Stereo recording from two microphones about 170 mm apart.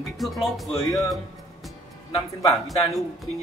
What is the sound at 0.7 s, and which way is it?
Speech, 15° left (ahead or behind).